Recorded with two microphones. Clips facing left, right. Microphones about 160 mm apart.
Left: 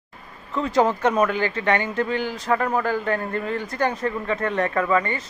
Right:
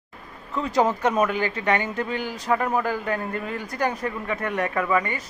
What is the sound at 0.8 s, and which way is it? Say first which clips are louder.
Speech: left 2 dB; 5° right (ahead or behind).